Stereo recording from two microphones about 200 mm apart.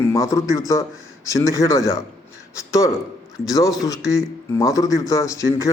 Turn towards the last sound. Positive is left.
turn(degrees=15)  # may be behind; listen again after turning